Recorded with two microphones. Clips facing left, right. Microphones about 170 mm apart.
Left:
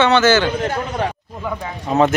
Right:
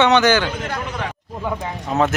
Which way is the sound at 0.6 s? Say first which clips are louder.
Left 5 dB; 35° left (ahead or behind).